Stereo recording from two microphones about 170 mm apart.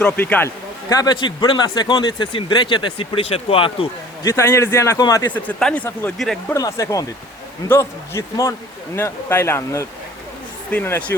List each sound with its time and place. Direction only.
0.0 s speech: 10° left (ahead or behind); by 3.8 s 35° left (ahead or behind)
4.2 s speech: 15° left (ahead or behind)
5.3 s speech: 5° left (ahead or behind)
6.5 s speech: 20° left (ahead or behind)